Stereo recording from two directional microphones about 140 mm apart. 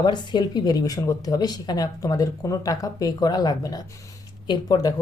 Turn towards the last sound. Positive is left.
turn(degrees=30)  # may be behind; listen again after turning